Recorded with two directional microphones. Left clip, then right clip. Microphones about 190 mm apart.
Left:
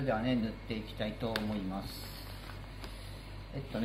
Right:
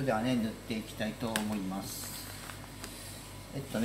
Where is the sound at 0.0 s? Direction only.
Centre (ahead or behind).